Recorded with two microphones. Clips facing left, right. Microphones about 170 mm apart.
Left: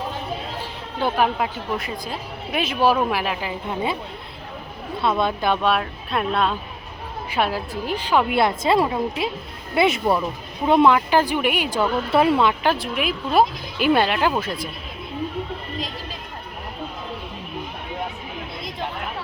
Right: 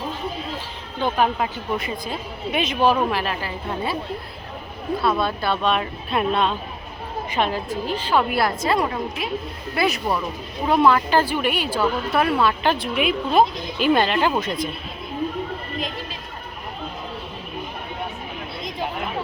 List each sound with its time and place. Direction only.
1.0 s speech: 5° left (ahead or behind)
4.9 s speech: 20° left (ahead or behind)
5.7 s speech: centre (ahead or behind); by 12.5 s 20° left (ahead or behind)
12.6 s speech: centre (ahead or behind)